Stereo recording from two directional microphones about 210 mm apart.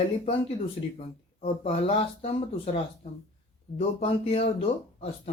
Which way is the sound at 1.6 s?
30° left (ahead or behind).